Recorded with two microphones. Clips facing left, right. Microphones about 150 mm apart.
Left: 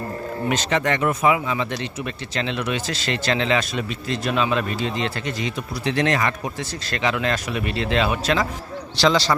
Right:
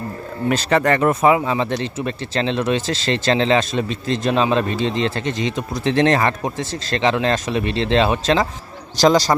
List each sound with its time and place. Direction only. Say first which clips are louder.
0.7 s speech: right 6 dB; 35° right (ahead or behind)
9.0 s a man's voice: right 5 dB; 45° right (ahead or behind)